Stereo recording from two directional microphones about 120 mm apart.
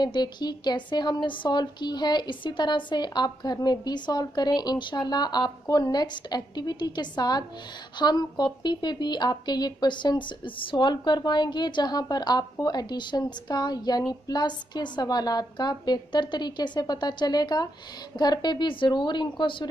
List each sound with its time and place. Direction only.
0.0 s speech: 35° left (ahead or behind)